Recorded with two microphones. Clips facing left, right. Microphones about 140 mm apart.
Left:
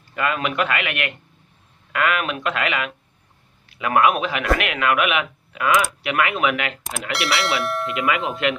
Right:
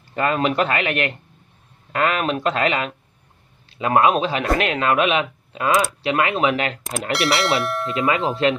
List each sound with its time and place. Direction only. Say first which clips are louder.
0.1 s a man's voice: right 4 dB; 35° right (ahead or behind)
7.1 s speech: right 3 dB; centre (ahead or behind)
7.9 s speech: right 5 dB; 30° right (ahead or behind)